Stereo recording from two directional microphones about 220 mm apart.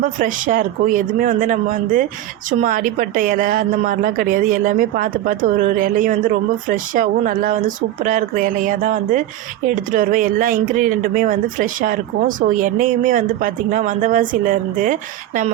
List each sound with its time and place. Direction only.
0.0 s a woman's voice: 35° right (ahead or behind)